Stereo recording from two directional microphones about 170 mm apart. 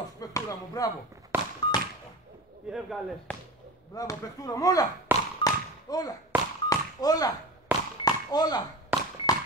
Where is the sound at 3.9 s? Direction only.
20° left (ahead or behind).